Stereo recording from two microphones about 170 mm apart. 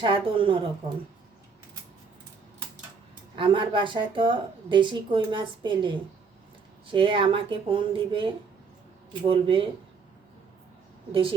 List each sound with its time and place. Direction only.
0.0 s speech: 30° right (ahead or behind)
3.3 s speech: 30° right (ahead or behind)
9.3 s speech: 30° right (ahead or behind)
11.1 s speech: 30° right (ahead or behind)